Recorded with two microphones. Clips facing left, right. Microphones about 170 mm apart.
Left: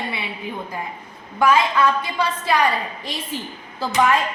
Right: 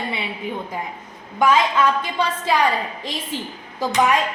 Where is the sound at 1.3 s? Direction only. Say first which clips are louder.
Even; 20° right (ahead or behind).